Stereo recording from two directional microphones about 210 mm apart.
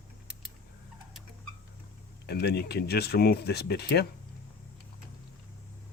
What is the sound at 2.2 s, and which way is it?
Speech, 50° left (ahead or behind).